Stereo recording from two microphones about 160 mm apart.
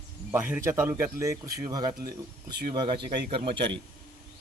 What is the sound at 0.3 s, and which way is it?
A man's voice, 10° right (ahead or behind).